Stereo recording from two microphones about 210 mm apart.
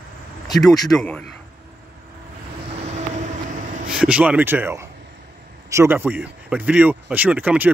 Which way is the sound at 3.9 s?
5° right (ahead or behind).